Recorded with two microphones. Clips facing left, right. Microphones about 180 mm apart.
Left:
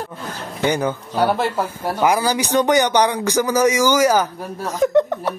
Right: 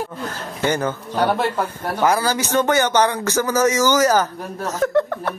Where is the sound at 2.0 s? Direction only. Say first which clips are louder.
Left 1 dB; 15° left (ahead or behind).